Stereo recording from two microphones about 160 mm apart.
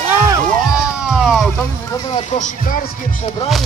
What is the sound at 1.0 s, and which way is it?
Vehicle, 5° right (ahead or behind).